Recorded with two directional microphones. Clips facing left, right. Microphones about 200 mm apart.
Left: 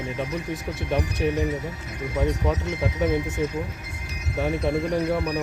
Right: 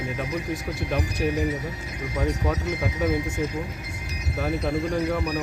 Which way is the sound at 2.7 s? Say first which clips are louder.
Left 1 dB; 25° left (ahead or behind).